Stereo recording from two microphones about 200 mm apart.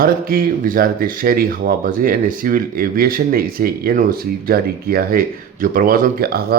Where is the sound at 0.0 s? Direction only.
50° right (ahead or behind).